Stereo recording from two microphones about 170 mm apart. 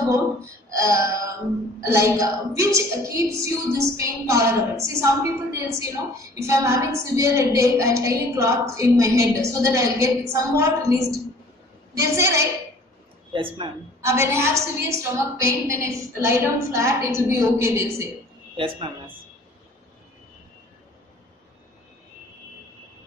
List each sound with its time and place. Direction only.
0.7 s a woman's voice: 15° right (ahead or behind)
12.0 s a woman's voice: 15° right (ahead or behind)
13.3 s speech: 30° right (ahead or behind)
14.0 s a woman's voice: 15° right (ahead or behind)
18.6 s speech: 30° right (ahead or behind)